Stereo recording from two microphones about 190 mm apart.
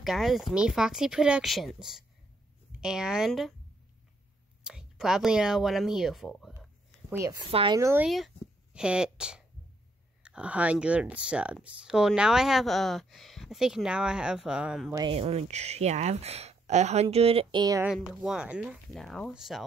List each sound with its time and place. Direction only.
0.0 s speech: centre (ahead or behind)
4.6 s speech: 5° right (ahead or behind)
7.1 s a woman's voice: 15° right (ahead or behind)
7.8 s speech: 10° right (ahead or behind)
15.0 s speech: 30° right (ahead or behind)
17.8 s speech: 5° right (ahead or behind)